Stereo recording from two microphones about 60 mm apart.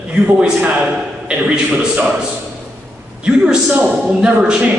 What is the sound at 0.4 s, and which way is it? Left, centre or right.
Speech, centre.